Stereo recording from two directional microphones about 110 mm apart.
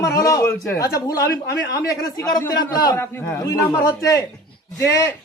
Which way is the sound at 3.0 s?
20° left (ahead or behind).